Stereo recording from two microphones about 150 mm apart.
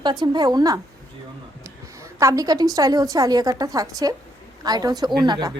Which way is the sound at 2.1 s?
20° right (ahead or behind).